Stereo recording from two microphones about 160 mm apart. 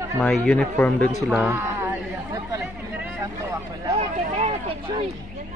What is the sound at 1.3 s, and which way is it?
Speech, 10° right (ahead or behind).